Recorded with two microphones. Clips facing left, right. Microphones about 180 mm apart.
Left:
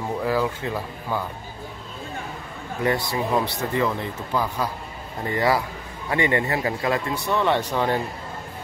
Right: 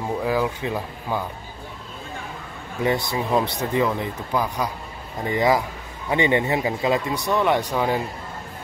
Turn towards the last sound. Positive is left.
turn(degrees=-10)  # may be behind; listen again after turning